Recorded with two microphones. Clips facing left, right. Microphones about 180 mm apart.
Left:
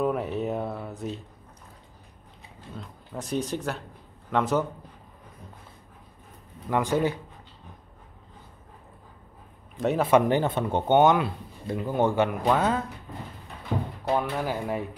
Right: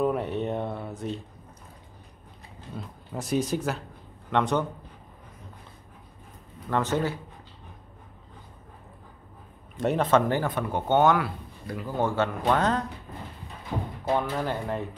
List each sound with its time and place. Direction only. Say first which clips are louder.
0.0 s a sound: even; centre (ahead or behind)
3.1 s speech: right 1 dB; 15° right (ahead or behind)
3.4 s speech: right 2 dB; 5° right (ahead or behind)
6.7 s speech: left 2 dB; 10° left (ahead or behind)
9.8 s speech: even; centre (ahead or behind)
10.0 s speech: left 4 dB; 15° left (ahead or behind)
14.0 s speech: even; 5° left (ahead or behind)